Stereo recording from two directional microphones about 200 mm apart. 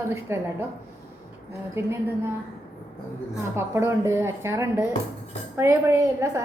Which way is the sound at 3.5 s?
15° right (ahead or behind).